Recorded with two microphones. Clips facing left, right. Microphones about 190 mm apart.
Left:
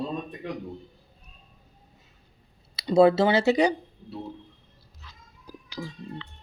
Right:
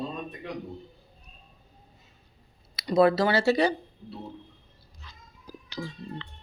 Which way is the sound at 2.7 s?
30° left (ahead or behind).